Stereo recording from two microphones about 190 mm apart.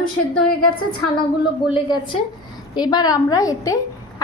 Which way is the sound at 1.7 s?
25° left (ahead or behind).